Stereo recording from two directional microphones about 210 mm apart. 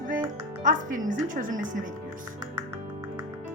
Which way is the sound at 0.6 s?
40° right (ahead or behind).